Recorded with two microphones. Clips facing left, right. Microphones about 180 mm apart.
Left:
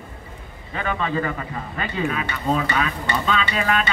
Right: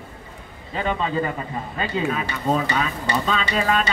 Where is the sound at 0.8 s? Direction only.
25° right (ahead or behind).